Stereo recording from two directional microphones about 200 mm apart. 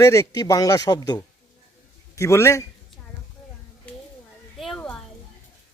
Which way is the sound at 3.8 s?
5° left (ahead or behind).